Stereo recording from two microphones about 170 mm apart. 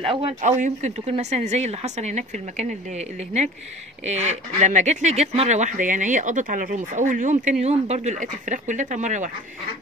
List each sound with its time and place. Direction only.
0.0 s speech: 35° right (ahead or behind)
0.4 s speech: 45° right (ahead or behind)